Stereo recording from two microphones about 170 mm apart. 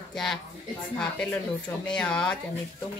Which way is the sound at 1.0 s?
5° left (ahead or behind).